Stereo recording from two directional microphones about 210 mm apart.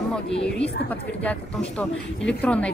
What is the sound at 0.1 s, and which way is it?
A woman's voice, 5° left (ahead or behind).